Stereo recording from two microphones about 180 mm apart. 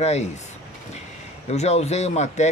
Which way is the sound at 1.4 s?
35° left (ahead or behind).